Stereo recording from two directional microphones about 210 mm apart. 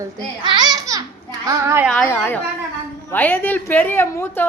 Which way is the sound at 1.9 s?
5° left (ahead or behind).